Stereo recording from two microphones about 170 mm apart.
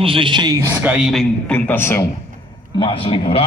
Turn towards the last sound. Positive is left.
turn(degrees=35)  # may be behind; listen again after turning